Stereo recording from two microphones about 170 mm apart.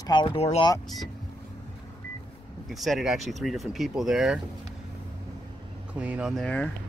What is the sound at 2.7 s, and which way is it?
Speech, centre (ahead or behind).